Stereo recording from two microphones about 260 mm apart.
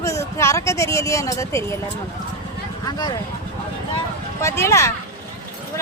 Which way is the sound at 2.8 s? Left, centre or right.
Centre.